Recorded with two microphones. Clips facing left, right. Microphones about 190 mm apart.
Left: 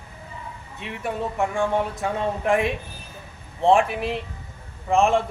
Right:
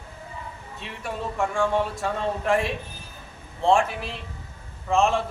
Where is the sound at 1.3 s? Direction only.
15° left (ahead or behind).